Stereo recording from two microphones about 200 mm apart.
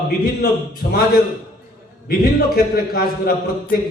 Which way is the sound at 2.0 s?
50° left (ahead or behind).